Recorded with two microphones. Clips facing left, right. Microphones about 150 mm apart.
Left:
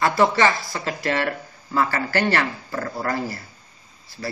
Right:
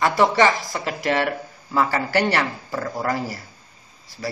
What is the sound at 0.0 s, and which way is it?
Speech, 15° right (ahead or behind).